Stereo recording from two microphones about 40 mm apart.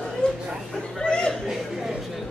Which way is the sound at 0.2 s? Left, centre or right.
Left.